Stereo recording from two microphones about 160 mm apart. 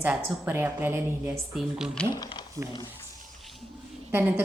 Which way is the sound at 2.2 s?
25° left (ahead or behind).